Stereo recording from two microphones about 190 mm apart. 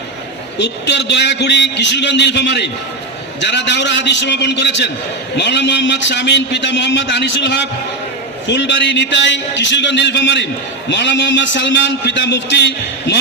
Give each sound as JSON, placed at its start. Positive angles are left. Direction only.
{"t": 0.6, "sound": "a man's voice", "side_deg": 65}